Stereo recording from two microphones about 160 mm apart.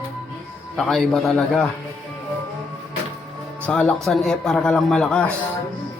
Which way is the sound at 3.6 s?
5° left (ahead or behind).